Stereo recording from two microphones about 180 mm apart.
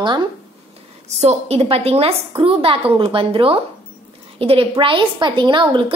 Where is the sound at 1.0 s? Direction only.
35° right (ahead or behind).